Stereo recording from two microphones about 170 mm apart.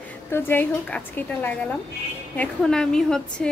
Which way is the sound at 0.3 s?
15° left (ahead or behind).